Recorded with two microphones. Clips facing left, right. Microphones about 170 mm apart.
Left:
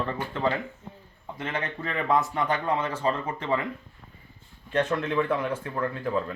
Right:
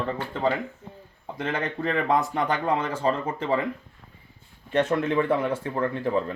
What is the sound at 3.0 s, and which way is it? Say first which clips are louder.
Speech: right 2 dB; 30° right (ahead or behind).